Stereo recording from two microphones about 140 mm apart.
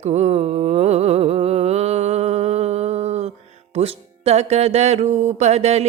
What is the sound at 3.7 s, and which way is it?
Music, 45° right (ahead or behind).